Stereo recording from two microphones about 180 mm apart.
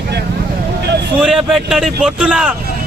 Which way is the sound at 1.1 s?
Centre (ahead or behind).